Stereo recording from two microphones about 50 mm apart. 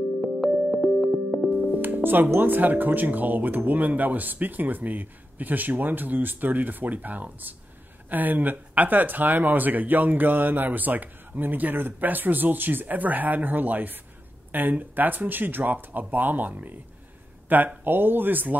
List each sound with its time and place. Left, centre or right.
0.4 s music: centre
2.0 s speech: right